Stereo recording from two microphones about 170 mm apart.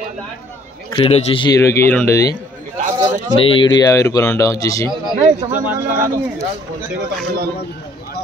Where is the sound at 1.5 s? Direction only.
15° left (ahead or behind).